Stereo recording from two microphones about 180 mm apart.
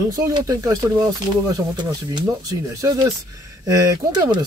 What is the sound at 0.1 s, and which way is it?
Speech, 20° right (ahead or behind).